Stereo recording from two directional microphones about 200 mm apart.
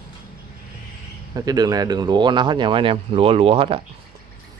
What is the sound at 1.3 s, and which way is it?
Speech, 20° right (ahead or behind).